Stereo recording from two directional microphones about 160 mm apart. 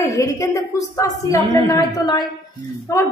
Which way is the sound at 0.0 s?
20° left (ahead or behind).